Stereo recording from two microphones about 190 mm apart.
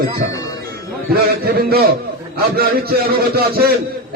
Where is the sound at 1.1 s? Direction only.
55° right (ahead or behind).